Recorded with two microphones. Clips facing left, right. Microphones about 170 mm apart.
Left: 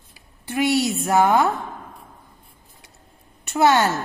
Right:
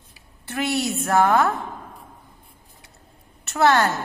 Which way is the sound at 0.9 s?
15° left (ahead or behind).